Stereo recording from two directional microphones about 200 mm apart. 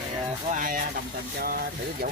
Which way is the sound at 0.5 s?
45° right (ahead or behind).